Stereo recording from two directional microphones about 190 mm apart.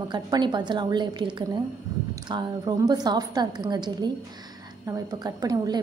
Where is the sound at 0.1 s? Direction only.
25° right (ahead or behind).